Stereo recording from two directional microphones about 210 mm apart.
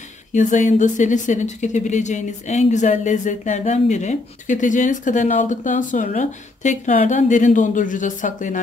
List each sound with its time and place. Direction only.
0.3 s speech: 35° left (ahead or behind)